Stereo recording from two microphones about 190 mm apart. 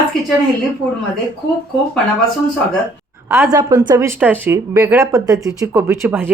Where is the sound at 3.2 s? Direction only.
10° right (ahead or behind).